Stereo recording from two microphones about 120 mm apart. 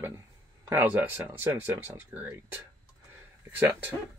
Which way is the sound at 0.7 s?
20° right (ahead or behind).